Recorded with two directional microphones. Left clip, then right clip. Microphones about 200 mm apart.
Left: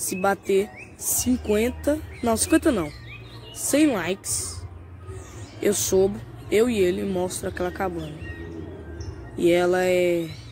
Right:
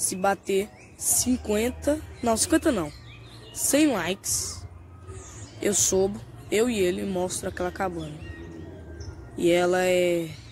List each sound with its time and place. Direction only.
0.1 s a woman's voice: 5° right (ahead or behind)
5.6 s a woman's voice: 10° right (ahead or behind)
9.4 s a woman's voice: 10° right (ahead or behind)